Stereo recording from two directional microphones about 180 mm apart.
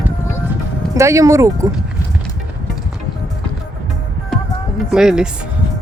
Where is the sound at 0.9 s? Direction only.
15° right (ahead or behind).